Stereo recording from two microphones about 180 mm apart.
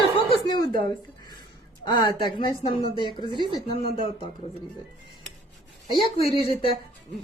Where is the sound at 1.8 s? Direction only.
25° left (ahead or behind).